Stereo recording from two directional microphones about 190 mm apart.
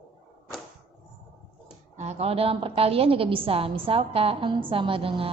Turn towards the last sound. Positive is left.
turn(degrees=-30)  # may be behind; listen again after turning